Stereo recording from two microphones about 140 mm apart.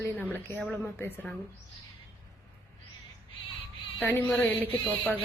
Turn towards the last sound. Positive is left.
turn(degrees=10)  # may be behind; listen again after turning